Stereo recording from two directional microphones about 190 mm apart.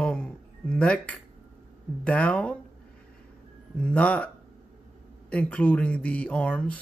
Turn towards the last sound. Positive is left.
turn(degrees=5)  # may be behind; listen again after turning